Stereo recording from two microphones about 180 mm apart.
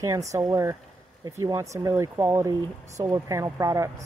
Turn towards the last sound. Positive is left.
turn(degrees=-15)  # may be behind; listen again after turning